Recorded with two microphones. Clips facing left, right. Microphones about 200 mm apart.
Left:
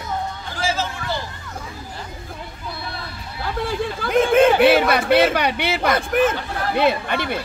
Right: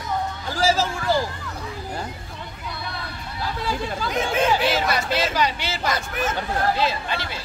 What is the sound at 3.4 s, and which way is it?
Speech, 55° left (ahead or behind).